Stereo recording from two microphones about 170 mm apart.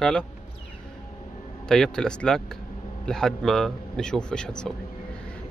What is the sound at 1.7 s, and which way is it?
A man's voice, 5° left (ahead or behind).